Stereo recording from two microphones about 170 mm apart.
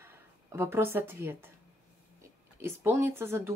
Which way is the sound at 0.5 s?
15° right (ahead or behind).